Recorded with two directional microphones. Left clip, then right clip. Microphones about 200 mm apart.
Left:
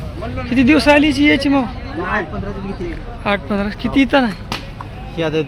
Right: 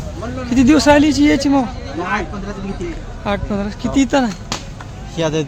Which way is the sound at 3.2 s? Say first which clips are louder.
Left 2 dB; 5° right (ahead or behind).